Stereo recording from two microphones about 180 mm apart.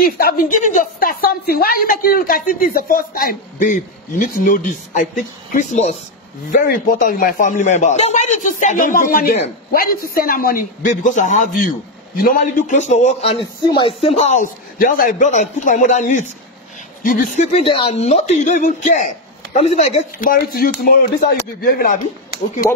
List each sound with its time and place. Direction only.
0.0 s a woman's voice: 50° left (ahead or behind)
6.5 s a woman's voice: 55° left (ahead or behind); by 20.0 s 35° left (ahead or behind)
20.2 s a woman's voice: 50° left (ahead or behind)